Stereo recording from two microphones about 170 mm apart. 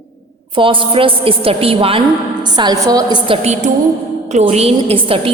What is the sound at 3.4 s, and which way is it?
A woman's voice, 40° right (ahead or behind).